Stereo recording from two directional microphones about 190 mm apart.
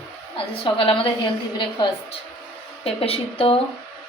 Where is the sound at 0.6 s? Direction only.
25° left (ahead or behind).